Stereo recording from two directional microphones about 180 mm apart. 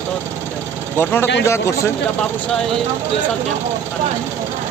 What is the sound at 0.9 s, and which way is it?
Speech, 10° left (ahead or behind).